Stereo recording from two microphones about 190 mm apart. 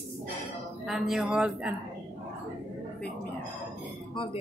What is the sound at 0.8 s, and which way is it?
Speech, centre (ahead or behind).